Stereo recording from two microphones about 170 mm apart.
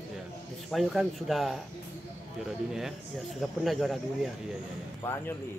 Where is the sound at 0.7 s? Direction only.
Centre (ahead or behind).